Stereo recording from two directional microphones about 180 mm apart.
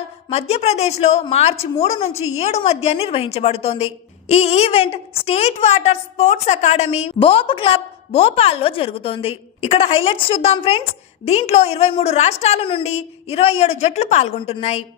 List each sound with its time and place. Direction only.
0.3 s a woman's voice: 35° left (ahead or behind)